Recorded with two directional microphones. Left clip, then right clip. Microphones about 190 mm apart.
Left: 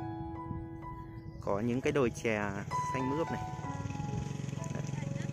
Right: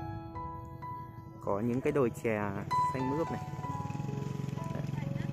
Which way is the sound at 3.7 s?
65° right (ahead or behind).